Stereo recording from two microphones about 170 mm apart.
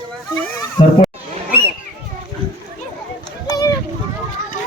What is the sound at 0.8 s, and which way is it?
Speech, 25° left (ahead or behind).